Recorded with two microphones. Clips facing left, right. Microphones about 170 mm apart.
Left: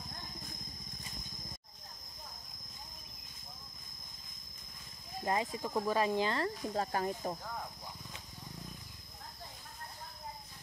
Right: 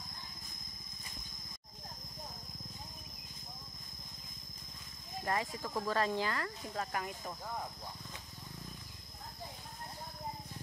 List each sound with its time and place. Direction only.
5.2 s speech: 20° left (ahead or behind)
6.3 s speech: 30° left (ahead or behind)